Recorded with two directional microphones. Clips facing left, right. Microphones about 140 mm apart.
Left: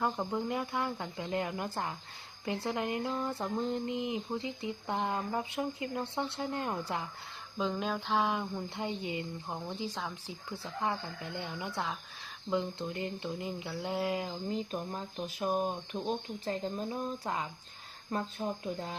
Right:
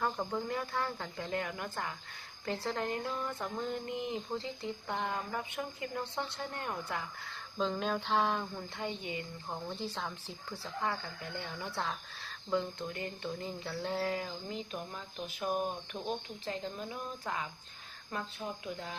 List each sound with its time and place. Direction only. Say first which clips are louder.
0.2 s speech: left 2 dB; 15° left (ahead or behind)
3.2 s speech: left 4 dB; 30° left (ahead or behind)
7.6 s speech: even; 5° left (ahead or behind)
8.7 s speech: left 1 dB; 20° left (ahead or behind)
10.5 s speech: left 2 dB; 20° left (ahead or behind)
14.7 s speech: left 4 dB; 35° left (ahead or behind)
16.4 s speech: left 4 dB; 35° left (ahead or behind)